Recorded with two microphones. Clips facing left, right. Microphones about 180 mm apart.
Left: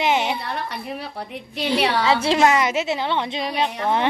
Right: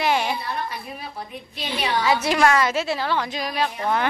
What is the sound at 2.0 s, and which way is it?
A woman's voice, 30° left (ahead or behind).